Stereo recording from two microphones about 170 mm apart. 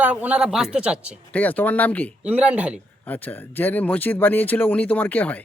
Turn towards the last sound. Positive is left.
turn(degrees=10)  # may be behind; listen again after turning